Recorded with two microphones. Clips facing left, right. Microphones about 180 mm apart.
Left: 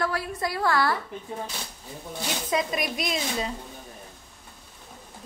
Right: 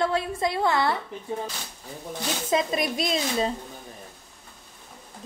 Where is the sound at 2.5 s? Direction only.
25° right (ahead or behind).